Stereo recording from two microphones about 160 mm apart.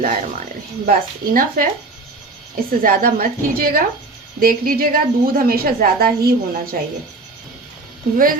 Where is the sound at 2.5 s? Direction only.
60° right (ahead or behind).